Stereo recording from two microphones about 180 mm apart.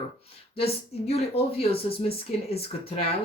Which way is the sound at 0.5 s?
35° left (ahead or behind).